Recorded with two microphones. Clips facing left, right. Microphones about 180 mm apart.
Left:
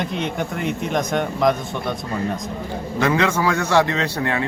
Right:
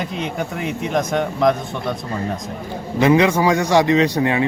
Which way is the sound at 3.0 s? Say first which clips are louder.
Right 5 dB; 20° right (ahead or behind).